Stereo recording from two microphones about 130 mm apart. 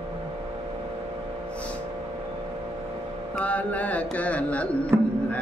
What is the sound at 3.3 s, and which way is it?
Speech, 10° left (ahead or behind).